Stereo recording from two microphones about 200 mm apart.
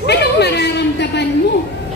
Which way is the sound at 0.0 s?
55° left (ahead or behind).